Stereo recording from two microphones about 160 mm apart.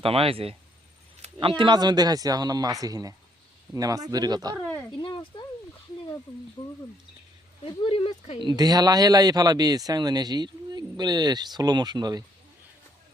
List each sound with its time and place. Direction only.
0.0 s speech: 35° right (ahead or behind)
4.6 s speech: 5° left (ahead or behind)
4.9 s speech: 30° left (ahead or behind)
7.6 s speech: 35° left (ahead or behind)
8.4 s speech: 25° right (ahead or behind)